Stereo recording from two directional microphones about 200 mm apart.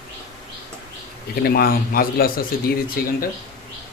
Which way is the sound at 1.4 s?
45° left (ahead or behind).